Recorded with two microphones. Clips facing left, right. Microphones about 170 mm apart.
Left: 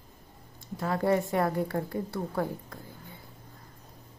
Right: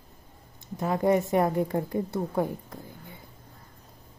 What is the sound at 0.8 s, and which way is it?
A woman's voice, 20° right (ahead or behind).